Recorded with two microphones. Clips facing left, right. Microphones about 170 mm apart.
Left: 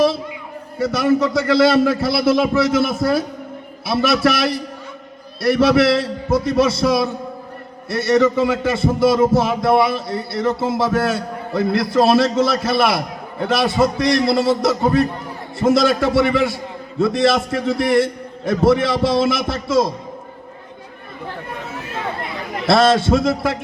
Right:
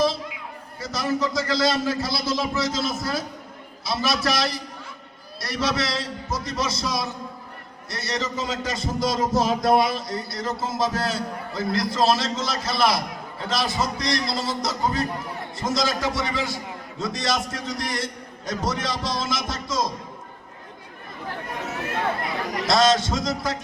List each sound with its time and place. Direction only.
0.8 s a man's voice: 60° left (ahead or behind)
10.1 s speech: 25° left (ahead or behind)
10.4 s a man's voice: 60° left (ahead or behind)
22.6 s a man's voice: 60° left (ahead or behind)